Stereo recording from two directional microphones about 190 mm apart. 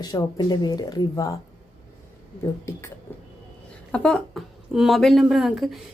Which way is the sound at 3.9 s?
5° left (ahead or behind).